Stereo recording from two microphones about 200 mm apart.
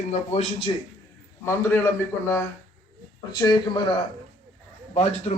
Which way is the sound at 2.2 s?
15° left (ahead or behind).